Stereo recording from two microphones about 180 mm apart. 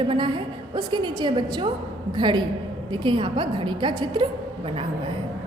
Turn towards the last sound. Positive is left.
turn(degrees=-25)  # may be behind; listen again after turning